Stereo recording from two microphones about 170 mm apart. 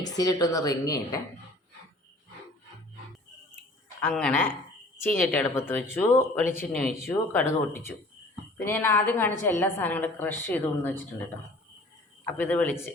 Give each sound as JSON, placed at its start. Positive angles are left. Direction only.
{"t": 0.2, "sound": "a woman's voice", "side_deg": 20}
{"t": 4.0, "sound": "a woman's voice", "side_deg": 5}
{"t": 12.2, "sound": "a woman's voice", "side_deg": 10}